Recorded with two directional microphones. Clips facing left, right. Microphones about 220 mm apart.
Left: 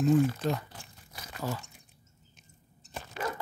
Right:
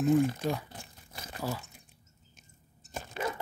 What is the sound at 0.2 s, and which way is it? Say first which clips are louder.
Speech: left 1 dB; 15° right (ahead or behind).